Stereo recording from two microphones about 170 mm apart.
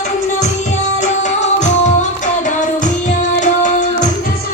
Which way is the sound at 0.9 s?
45° left (ahead or behind).